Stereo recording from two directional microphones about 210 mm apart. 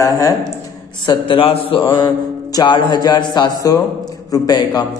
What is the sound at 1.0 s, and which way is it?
A man's voice, 25° left (ahead or behind).